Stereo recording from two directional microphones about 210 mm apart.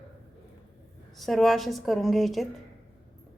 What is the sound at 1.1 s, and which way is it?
A woman's voice, centre (ahead or behind).